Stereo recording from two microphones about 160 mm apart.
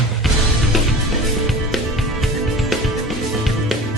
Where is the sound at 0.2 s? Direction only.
Centre (ahead or behind).